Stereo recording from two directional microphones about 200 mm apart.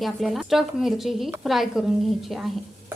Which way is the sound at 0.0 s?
Centre (ahead or behind).